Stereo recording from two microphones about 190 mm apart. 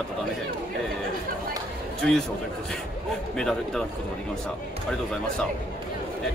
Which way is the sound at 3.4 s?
5° left (ahead or behind).